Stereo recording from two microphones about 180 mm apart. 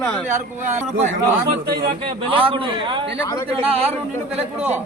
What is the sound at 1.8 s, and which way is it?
A man's voice, 30° right (ahead or behind).